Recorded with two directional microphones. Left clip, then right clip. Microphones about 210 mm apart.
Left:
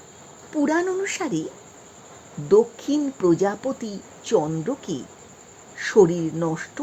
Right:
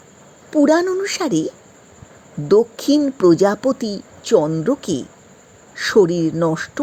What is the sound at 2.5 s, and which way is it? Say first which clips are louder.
Speech: right 4 dB; 20° right (ahead or behind).